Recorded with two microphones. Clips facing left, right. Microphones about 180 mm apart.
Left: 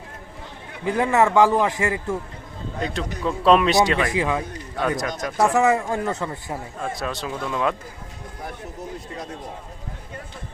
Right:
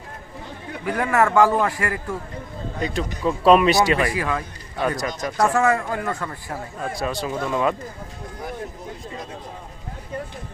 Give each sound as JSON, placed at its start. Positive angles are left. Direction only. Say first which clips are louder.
{"t": 0.9, "sound": "a man's voice", "louder": "left 1 dB", "side_deg": 25}
{"t": 2.8, "sound": "speech", "louder": "right 2 dB", "side_deg": -5}
{"t": 4.1, "sound": "a man's voice", "louder": "left 2 dB", "side_deg": 20}
{"t": 5.0, "sound": "speech", "louder": "even", "side_deg": 0}
{"t": 5.5, "sound": "a man's voice", "louder": "left 2 dB", "side_deg": 20}
{"t": 6.8, "sound": "speech", "louder": "right 3 dB", "side_deg": 0}